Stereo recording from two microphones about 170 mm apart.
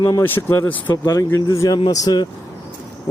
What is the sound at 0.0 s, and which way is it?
Speech, 15° left (ahead or behind).